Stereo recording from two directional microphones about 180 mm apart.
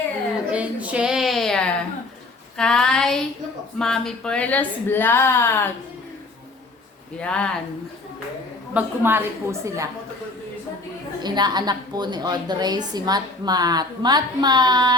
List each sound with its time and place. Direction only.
0.5 s a sound: 5° right (ahead or behind)
2.6 s child singing: 5° left (ahead or behind)
3.8 s speech: 5° left (ahead or behind)
7.2 s speech: 5° left (ahead or behind)
8.7 s a woman's voice: 10° right (ahead or behind)
11.2 s a woman's voice: 25° right (ahead or behind)